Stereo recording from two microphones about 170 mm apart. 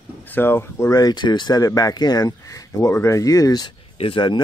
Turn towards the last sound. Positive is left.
turn(degrees=30)  # may be behind; listen again after turning